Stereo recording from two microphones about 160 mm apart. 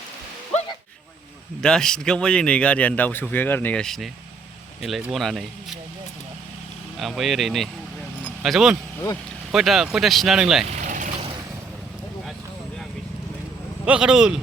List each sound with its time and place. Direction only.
1.6 s speech: 5° left (ahead or behind)
6.9 s speech: centre (ahead or behind)
10.8 s vehicle: 50° right (ahead or behind)
13.8 s speech: 5° right (ahead or behind)